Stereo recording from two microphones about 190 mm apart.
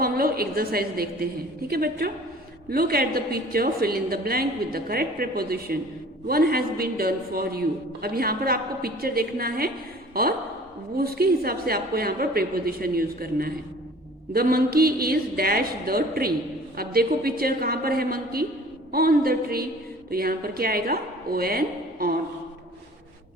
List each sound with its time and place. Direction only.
0.0 s a woman's voice: 50° right (ahead or behind)
10.9 s a woman's voice: 55° right (ahead or behind)